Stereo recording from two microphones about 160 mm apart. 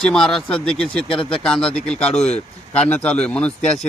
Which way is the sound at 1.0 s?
30° left (ahead or behind).